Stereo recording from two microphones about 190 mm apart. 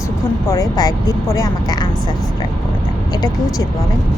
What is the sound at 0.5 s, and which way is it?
A woman's voice, 20° left (ahead or behind).